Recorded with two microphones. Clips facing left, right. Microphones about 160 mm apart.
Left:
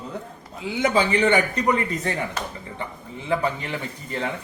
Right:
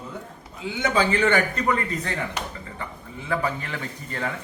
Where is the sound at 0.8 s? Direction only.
20° left (ahead or behind).